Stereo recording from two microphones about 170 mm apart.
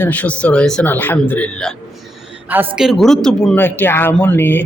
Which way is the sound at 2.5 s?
5° right (ahead or behind).